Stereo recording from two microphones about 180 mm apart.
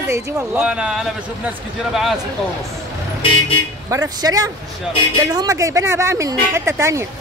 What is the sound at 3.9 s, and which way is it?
A man's voice, 20° right (ahead or behind).